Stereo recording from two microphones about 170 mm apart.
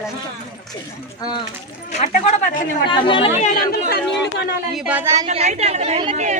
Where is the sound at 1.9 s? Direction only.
45° left (ahead or behind).